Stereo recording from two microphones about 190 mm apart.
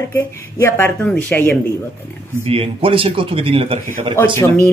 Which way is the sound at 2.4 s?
30° right (ahead or behind).